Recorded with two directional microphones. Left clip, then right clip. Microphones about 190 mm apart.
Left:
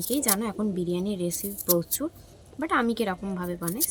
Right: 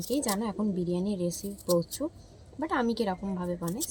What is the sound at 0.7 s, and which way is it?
Speech, 10° right (ahead or behind).